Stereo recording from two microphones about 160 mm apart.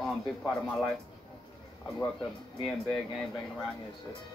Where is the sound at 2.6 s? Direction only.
5° left (ahead or behind).